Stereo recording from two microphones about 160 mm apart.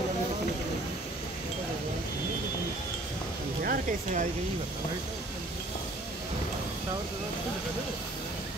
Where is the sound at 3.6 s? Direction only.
60° right (ahead or behind).